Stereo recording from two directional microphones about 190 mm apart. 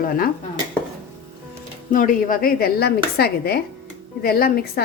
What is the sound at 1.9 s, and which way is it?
A woman's voice, 45° left (ahead or behind).